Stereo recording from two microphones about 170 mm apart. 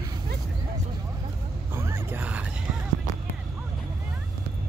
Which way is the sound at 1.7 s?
15° right (ahead or behind).